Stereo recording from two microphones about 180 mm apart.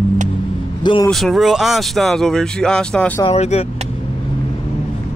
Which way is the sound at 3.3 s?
35° left (ahead or behind).